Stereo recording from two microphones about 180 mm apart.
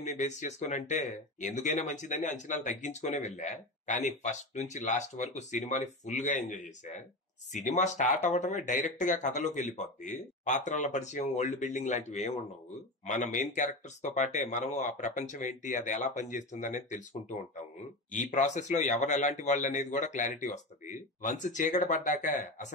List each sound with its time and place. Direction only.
0.0 s a man's voice: 40° left (ahead or behind)